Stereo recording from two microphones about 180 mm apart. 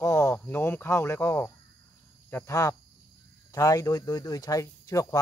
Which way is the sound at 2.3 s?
15° left (ahead or behind).